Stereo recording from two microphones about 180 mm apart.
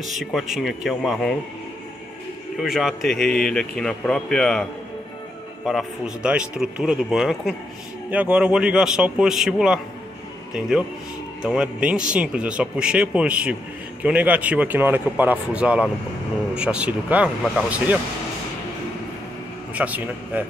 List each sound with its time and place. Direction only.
0.2 s speech: centre (ahead or behind)
2.6 s speech: centre (ahead or behind)
5.7 s speech: centre (ahead or behind)
11.4 s speech: 5° right (ahead or behind)
19.7 s speech: 10° right (ahead or behind)